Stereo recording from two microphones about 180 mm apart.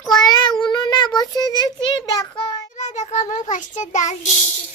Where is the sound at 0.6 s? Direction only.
25° left (ahead or behind).